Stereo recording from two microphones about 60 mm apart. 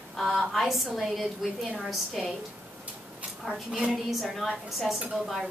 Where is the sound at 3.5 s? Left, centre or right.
Centre.